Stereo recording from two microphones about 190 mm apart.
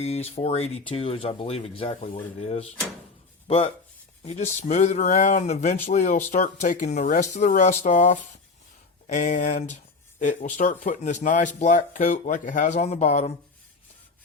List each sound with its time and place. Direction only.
0.0 s speech: 35° left (ahead or behind)